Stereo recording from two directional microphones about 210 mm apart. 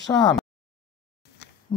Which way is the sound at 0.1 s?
10° left (ahead or behind).